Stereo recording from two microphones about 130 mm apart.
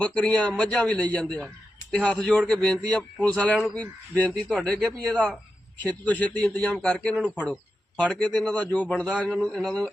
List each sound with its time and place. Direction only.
0.0 s a man's voice: 10° left (ahead or behind)